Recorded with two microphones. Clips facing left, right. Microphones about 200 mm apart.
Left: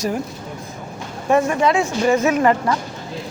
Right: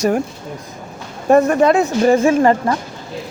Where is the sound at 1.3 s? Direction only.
40° right (ahead or behind).